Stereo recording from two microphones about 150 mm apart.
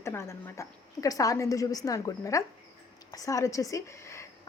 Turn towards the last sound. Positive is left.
turn(degrees=20)  # may be behind; listen again after turning